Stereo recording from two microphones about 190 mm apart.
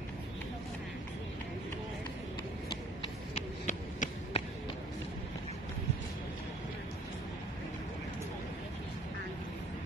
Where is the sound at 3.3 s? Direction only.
35° left (ahead or behind).